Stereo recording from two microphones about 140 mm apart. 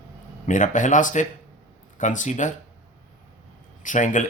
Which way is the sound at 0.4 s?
65° left (ahead or behind).